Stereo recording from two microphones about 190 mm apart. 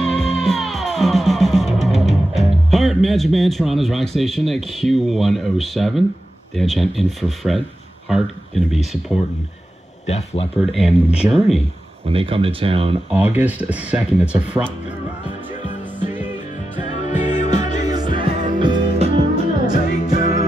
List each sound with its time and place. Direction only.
0.0 s music: centre (ahead or behind)
6.5 s speech: centre (ahead or behind)
10.0 s speech: 35° left (ahead or behind)
10.6 s speech: centre (ahead or behind)
12.1 s speech: 30° right (ahead or behind)
13.1 s speech: 10° right (ahead or behind)
17.1 s music: 40° left (ahead or behind)
17.8 s music: 20° right (ahead or behind)
19.7 s music: 50° left (ahead or behind)
20.2 s music: 35° right (ahead or behind)